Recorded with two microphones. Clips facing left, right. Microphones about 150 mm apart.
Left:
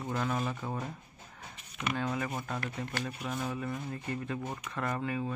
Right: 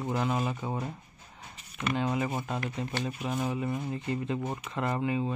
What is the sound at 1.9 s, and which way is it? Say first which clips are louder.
Speech: right 5 dB; 20° right (ahead or behind).